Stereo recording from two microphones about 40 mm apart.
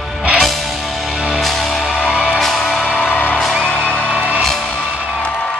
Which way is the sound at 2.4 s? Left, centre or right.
Centre.